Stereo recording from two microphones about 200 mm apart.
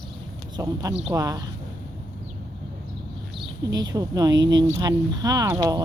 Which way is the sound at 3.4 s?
20° right (ahead or behind).